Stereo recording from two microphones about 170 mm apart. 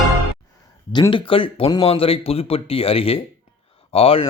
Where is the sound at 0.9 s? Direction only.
25° left (ahead or behind).